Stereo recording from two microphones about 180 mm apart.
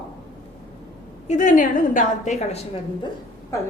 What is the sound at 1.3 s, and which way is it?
A woman's voice, 45° left (ahead or behind).